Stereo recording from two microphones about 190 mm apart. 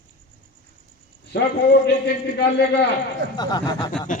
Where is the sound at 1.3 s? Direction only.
65° left (ahead or behind).